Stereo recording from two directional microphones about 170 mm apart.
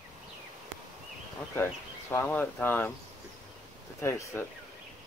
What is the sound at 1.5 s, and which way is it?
Speech, 15° left (ahead or behind).